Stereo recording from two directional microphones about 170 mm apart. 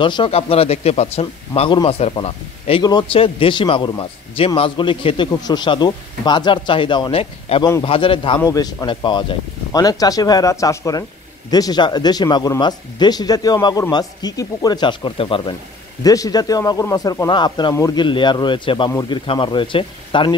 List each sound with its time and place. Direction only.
0.0 s speech: 30° left (ahead or behind)